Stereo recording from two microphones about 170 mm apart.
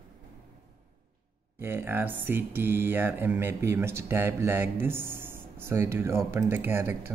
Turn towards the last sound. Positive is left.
turn(degrees=-15)  # may be behind; listen again after turning